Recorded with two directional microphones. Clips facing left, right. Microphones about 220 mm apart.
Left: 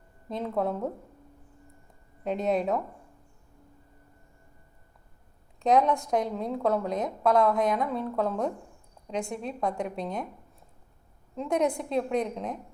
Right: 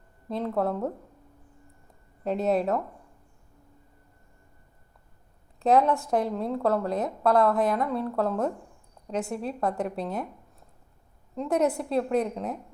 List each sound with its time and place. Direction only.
0.3 s a woman's voice: centre (ahead or behind)
2.2 s a woman's voice: centre (ahead or behind)
5.5 s a woman's voice: 5° right (ahead or behind)
11.3 s a woman's voice: 5° right (ahead or behind)